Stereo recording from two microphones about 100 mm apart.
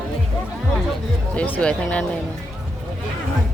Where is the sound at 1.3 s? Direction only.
15° left (ahead or behind).